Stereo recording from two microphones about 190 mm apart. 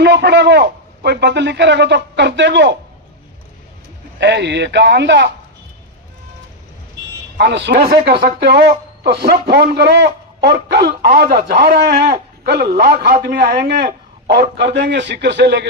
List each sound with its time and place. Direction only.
0.0 s a man's voice: 60° right (ahead or behind)
4.2 s a man's voice: 65° right (ahead or behind)
7.3 s a man's voice: 65° right (ahead or behind)
7.7 s a man's voice: 50° right (ahead or behind)